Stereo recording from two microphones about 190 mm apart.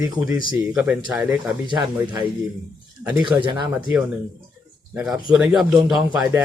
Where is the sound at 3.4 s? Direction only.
25° right (ahead or behind).